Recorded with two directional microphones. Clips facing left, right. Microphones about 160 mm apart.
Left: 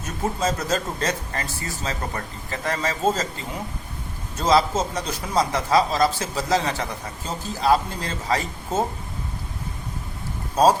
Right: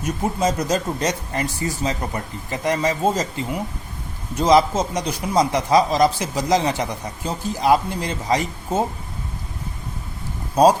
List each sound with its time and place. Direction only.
0.0 s speech: 15° right (ahead or behind)
4.4 s speech: 15° right (ahead or behind)
10.5 s speech: 15° right (ahead or behind)